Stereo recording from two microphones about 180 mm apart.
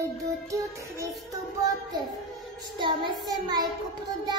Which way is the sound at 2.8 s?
25° right (ahead or behind).